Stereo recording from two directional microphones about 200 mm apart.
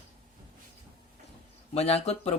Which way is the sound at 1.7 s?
30° left (ahead or behind).